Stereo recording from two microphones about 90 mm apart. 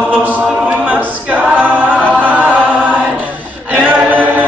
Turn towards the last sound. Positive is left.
turn(degrees=-20)  # may be behind; listen again after turning